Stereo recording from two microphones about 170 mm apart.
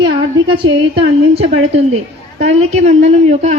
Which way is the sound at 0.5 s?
30° right (ahead or behind).